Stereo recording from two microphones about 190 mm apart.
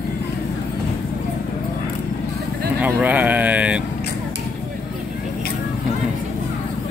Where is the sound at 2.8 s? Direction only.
10° right (ahead or behind).